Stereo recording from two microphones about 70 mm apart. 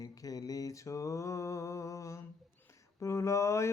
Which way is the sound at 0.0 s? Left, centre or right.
Left.